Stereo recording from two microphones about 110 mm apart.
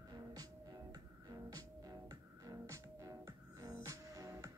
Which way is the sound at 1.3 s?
35° right (ahead or behind).